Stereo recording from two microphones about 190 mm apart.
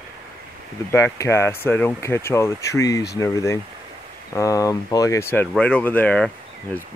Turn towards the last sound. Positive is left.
turn(degrees=5)  # may be behind; listen again after turning